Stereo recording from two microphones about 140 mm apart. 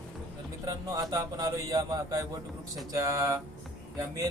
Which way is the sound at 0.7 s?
25° right (ahead or behind).